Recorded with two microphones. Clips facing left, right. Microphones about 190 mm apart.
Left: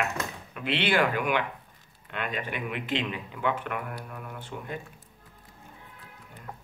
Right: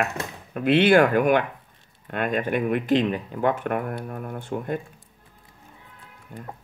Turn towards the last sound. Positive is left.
turn(degrees=-50)  # may be behind; listen again after turning